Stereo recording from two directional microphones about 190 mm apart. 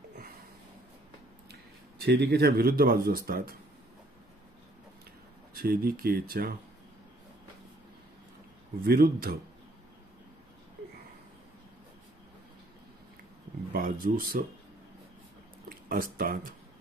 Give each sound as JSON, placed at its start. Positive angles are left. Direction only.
{"t": 2.0, "sound": "speech", "side_deg": -60}
{"t": 5.5, "sound": "speech", "side_deg": -50}
{"t": 8.8, "sound": "speech", "side_deg": -55}
{"t": 13.7, "sound": "speech", "side_deg": -50}
{"t": 15.9, "sound": "speech", "side_deg": -50}